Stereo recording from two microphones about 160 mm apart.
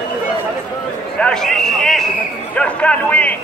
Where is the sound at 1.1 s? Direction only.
5° left (ahead or behind).